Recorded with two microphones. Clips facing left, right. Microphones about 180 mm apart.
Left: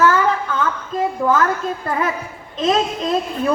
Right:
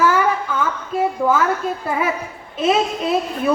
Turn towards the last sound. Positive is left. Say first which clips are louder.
# even
turn(degrees=-5)  # may be behind; listen again after turning